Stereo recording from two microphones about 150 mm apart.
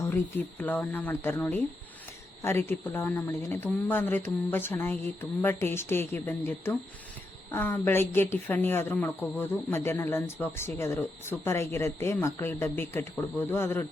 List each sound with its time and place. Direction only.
0.0 s speech: 15° left (ahead or behind)